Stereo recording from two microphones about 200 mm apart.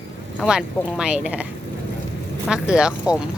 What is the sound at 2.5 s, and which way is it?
Speech, 5° right (ahead or behind).